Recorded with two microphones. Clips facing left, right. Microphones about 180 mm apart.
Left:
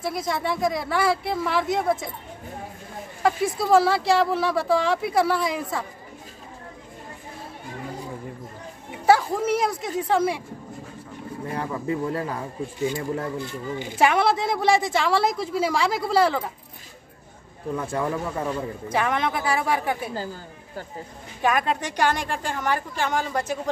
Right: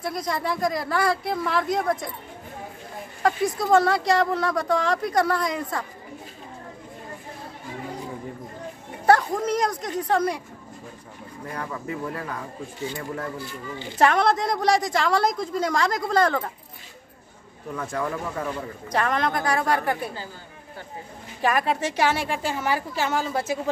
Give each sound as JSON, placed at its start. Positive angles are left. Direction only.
{"t": 0.0, "sound": "a woman's voice", "side_deg": 5}
{"t": 3.5, "sound": "a woman's voice", "side_deg": 5}
{"t": 9.0, "sound": "a woman's voice", "side_deg": 5}
{"t": 11.5, "sound": "speech", "side_deg": 30}
{"t": 13.7, "sound": "a woman's voice", "side_deg": 10}
{"t": 17.7, "sound": "speech", "side_deg": 25}
{"t": 18.9, "sound": "a woman's voice", "side_deg": 5}
{"t": 21.4, "sound": "a woman's voice", "side_deg": 0}